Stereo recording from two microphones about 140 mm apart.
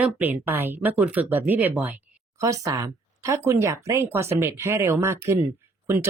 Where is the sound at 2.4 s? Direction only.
20° right (ahead or behind).